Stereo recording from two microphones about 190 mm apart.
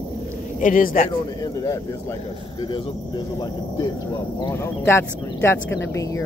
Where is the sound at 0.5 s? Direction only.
45° left (ahead or behind).